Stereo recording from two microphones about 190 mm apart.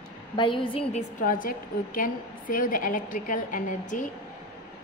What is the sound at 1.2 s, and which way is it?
A woman's voice, 45° left (ahead or behind).